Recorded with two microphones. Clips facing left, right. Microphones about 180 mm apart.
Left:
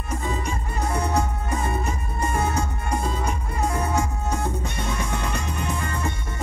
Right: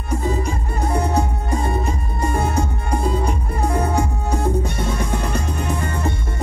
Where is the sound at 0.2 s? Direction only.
35° right (ahead or behind).